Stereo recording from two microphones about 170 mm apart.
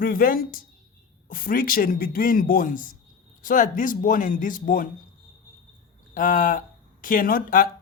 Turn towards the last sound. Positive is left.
turn(degrees=60)  # may be behind; listen again after turning